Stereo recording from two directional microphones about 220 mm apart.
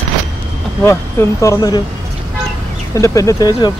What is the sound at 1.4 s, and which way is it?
Speech, 15° left (ahead or behind).